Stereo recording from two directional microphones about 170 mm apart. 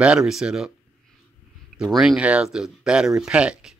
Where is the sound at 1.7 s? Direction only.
5° right (ahead or behind).